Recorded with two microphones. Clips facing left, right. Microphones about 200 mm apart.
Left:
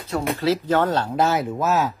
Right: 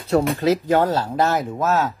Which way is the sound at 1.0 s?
Centre (ahead or behind).